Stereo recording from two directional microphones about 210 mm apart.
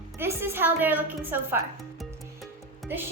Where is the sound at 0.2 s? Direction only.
10° right (ahead or behind).